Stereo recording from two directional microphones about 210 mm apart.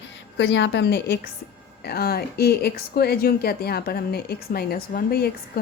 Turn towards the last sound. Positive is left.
turn(degrees=45)  # may be behind; listen again after turning